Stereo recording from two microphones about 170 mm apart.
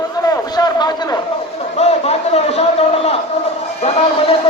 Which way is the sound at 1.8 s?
40° left (ahead or behind).